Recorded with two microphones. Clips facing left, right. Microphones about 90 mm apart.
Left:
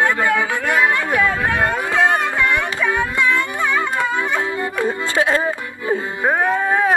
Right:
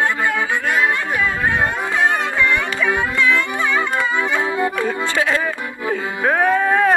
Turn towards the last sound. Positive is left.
turn(degrees=10)  # may be behind; listen again after turning